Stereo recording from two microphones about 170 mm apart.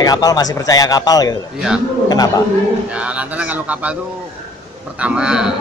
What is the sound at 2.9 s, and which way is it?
A man's voice, 5° right (ahead or behind).